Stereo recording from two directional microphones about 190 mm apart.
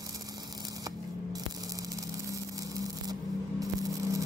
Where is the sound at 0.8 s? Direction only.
20° right (ahead or behind).